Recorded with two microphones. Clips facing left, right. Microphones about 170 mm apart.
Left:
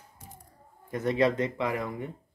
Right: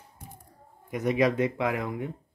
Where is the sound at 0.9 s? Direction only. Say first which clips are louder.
Right 1 dB; 15° right (ahead or behind).